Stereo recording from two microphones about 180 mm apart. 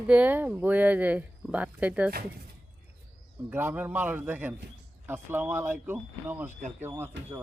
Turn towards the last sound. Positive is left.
turn(degrees=-10)  # may be behind; listen again after turning